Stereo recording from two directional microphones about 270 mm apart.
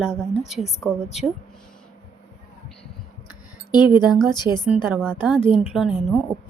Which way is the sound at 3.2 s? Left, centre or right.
Centre.